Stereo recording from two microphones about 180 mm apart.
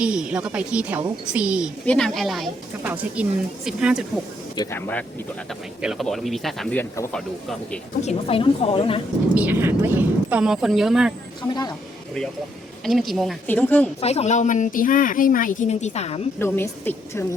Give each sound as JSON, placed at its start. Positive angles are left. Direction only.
{"t": 0.0, "sound": "speech", "side_deg": -5}
{"t": 4.5, "sound": "speech", "side_deg": 20}
{"t": 5.8, "sound": "speech", "side_deg": 0}
{"t": 8.0, "sound": "a woman's voice", "side_deg": 30}
{"t": 9.3, "sound": "speech", "side_deg": -10}
{"t": 11.4, "sound": "speech", "side_deg": 20}
{"t": 12.8, "sound": "a woman's voice", "side_deg": 0}
{"t": 14.0, "sound": "speech", "side_deg": 35}
{"t": 16.4, "sound": "a woman's voice", "side_deg": 10}